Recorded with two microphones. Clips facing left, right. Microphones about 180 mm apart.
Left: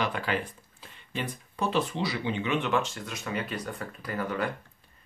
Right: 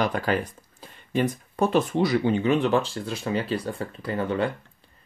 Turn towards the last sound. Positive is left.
turn(degrees=-25)  # may be behind; listen again after turning